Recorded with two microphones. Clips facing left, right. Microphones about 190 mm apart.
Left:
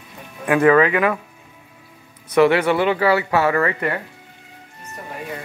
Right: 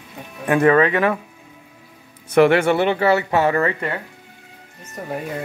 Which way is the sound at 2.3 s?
50° right (ahead or behind).